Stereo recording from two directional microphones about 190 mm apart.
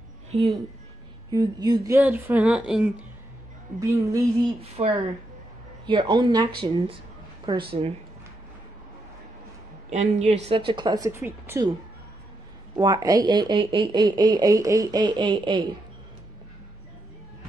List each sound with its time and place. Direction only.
0.3 s speech: 25° right (ahead or behind); by 2.9 s 5° right (ahead or behind)
3.8 s speech: 15° right (ahead or behind)
4.6 s speech: 30° right (ahead or behind)
9.8 s speech: 35° right (ahead or behind)
10.4 s speech: 25° right (ahead or behind)
12.7 s speech: 20° right (ahead or behind)